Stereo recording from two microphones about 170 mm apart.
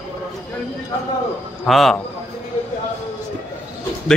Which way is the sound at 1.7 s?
Centre (ahead or behind).